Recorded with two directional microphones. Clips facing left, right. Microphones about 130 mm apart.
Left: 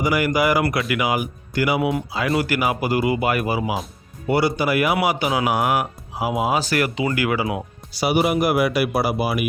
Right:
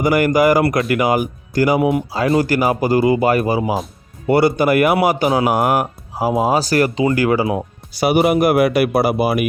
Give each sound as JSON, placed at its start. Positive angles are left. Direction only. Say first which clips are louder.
{"t": 0.0, "sound": "speech", "louder": "right 6 dB", "side_deg": -50}
{"t": 4.3, "sound": "speech", "louder": "right 6 dB", "side_deg": -50}
{"t": 7.9, "sound": "speech", "louder": "right 5 dB", "side_deg": -50}